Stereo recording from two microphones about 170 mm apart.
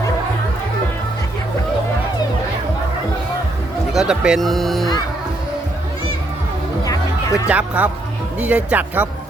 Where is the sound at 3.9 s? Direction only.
5° right (ahead or behind).